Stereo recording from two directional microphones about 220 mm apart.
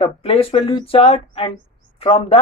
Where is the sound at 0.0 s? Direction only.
25° left (ahead or behind).